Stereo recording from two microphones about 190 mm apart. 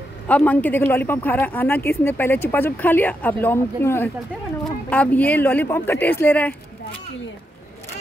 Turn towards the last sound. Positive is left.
turn(degrees=10)  # may be behind; listen again after turning